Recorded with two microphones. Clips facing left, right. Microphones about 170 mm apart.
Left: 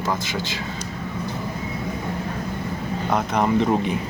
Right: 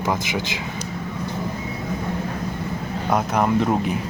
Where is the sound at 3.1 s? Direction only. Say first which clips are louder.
Right 1 dB; 5° right (ahead or behind).